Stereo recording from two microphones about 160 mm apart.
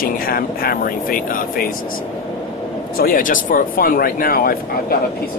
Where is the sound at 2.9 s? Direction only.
60° left (ahead or behind).